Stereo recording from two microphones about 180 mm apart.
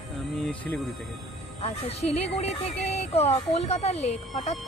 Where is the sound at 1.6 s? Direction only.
35° left (ahead or behind).